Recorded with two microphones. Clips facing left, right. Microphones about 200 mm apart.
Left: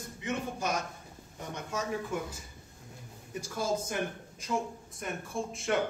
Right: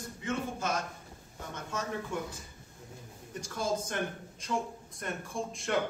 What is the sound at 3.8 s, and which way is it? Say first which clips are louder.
Speech: left 1 dB; 5° left (ahead or behind).